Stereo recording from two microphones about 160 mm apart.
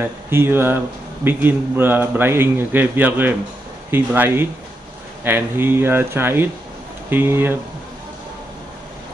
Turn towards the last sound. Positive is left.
turn(degrees=-15)  # may be behind; listen again after turning